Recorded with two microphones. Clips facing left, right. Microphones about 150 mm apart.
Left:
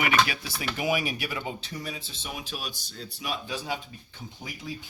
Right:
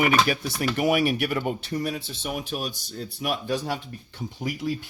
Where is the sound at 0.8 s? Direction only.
60° right (ahead or behind).